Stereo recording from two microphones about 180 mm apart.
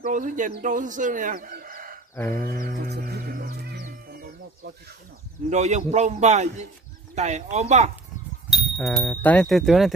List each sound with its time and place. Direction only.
0.0 s speech: 45° right (ahead or behind)
2.1 s a sound: 15° left (ahead or behind)
2.6 s music: 60° right (ahead or behind)
5.5 s a man's voice: 40° right (ahead or behind)
8.5 s speech: centre (ahead or behind)